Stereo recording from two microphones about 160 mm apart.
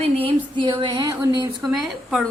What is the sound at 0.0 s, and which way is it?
Speech, 35° right (ahead or behind).